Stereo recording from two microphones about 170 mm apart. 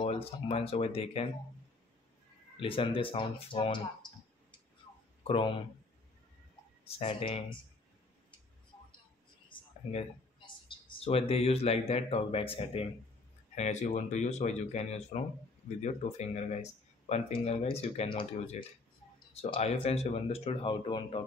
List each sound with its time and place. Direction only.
0.0 s speech: 35° left (ahead or behind)
2.5 s speech: 30° left (ahead or behind)
5.2 s speech: 30° left (ahead or behind)
6.8 s speech: 35° left (ahead or behind)
9.5 s speech: 30° left (ahead or behind)
13.6 s speech: 45° left (ahead or behind)